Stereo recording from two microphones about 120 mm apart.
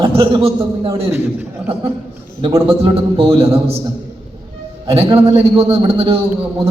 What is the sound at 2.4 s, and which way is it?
A man's voice, 50° right (ahead or behind).